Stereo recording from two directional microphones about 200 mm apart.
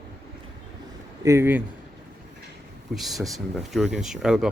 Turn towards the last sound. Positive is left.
turn(degrees=-5)  # may be behind; listen again after turning